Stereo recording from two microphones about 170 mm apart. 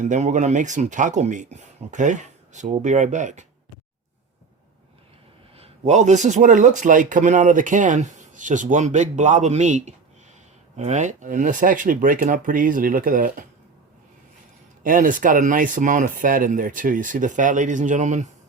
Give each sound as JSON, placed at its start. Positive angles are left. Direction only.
{"t": 0.0, "sound": "speech", "side_deg": -45}
{"t": 5.5, "sound": "speech", "side_deg": -40}
{"t": 14.8, "sound": "speech", "side_deg": -50}